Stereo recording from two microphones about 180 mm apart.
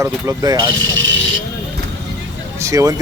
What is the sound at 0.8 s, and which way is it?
Speech, 90° right.